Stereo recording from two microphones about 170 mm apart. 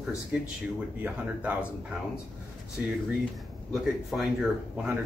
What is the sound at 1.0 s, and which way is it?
Speech, 10° right (ahead or behind).